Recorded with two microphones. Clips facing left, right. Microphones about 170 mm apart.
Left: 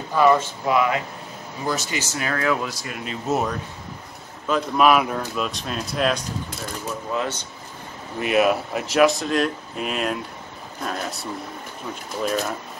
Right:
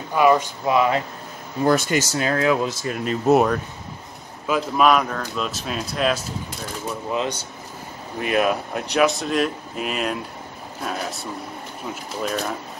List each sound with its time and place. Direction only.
0.1 s speech: 15° right (ahead or behind)
0.7 s speech: 30° right (ahead or behind)
1.6 s speech: 55° right (ahead or behind)
2.1 s speech: 25° right (ahead or behind)
3.3 s speech: 65° right (ahead or behind)
4.5 s speech: 5° right (ahead or behind)
4.8 s speech: 5° left (ahead or behind)
7.1 s speech: 15° right (ahead or behind)
8.2 s speech: centre (ahead or behind)